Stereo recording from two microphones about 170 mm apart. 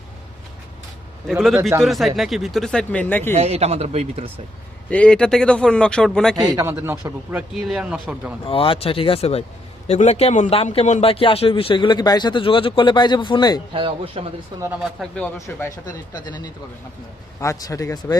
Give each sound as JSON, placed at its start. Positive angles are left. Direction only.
{"t": 1.3, "sound": "speech", "side_deg": 0}
{"t": 3.3, "sound": "speech", "side_deg": -40}
{"t": 4.9, "sound": "speech", "side_deg": 5}
{"t": 6.3, "sound": "speech", "side_deg": -20}
{"t": 8.4, "sound": "speech", "side_deg": 30}
{"t": 13.7, "sound": "speech", "side_deg": -30}
{"t": 14.8, "sound": "speech", "side_deg": 0}
{"t": 15.4, "sound": "speech", "side_deg": 15}